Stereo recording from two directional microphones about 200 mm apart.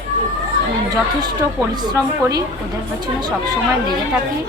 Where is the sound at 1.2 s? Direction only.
20° right (ahead or behind).